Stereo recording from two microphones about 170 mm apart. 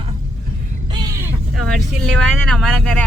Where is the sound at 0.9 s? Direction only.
25° right (ahead or behind).